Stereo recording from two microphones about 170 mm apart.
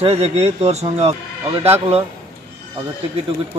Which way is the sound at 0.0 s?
40° right (ahead or behind).